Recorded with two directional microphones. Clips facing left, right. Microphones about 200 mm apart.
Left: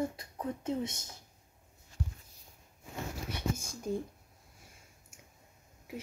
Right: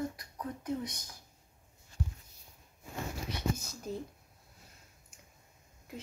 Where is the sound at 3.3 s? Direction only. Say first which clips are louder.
Right 1 dB; 10° left (ahead or behind).